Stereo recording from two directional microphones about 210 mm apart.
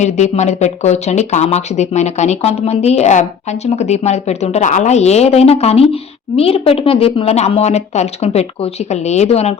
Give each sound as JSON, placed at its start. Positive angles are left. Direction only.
{"t": 0.0, "sound": "speech", "side_deg": 35}